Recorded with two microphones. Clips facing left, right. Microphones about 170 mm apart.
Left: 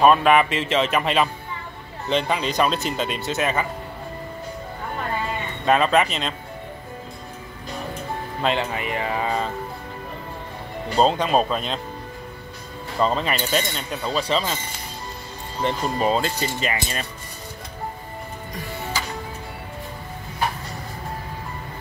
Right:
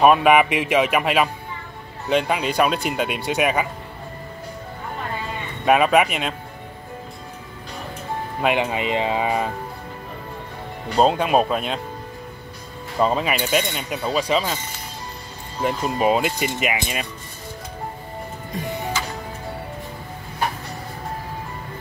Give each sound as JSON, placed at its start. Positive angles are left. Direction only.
{"t": 0.0, "sound": "speech", "side_deg": -10}
{"t": 5.7, "sound": "speech", "side_deg": -10}
{"t": 8.4, "sound": "speech", "side_deg": -15}
{"t": 11.0, "sound": "speech", "side_deg": -5}
{"t": 13.0, "sound": "speech", "side_deg": -5}
{"t": 15.6, "sound": "speech", "side_deg": -10}